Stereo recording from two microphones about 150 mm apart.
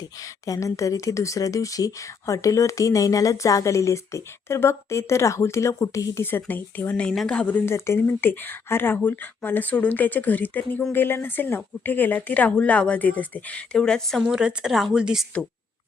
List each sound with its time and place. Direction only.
0.0 s a woman's voice: 25° left (ahead or behind); by 15.3 s 5° right (ahead or behind)